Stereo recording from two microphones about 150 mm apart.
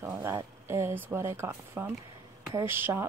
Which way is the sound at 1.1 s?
20° right (ahead or behind).